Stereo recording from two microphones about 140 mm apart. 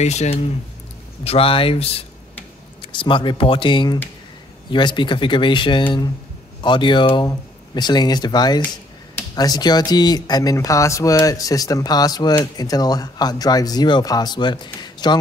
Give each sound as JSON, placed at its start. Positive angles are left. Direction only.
{"t": 0.0, "sound": "speech", "side_deg": 55}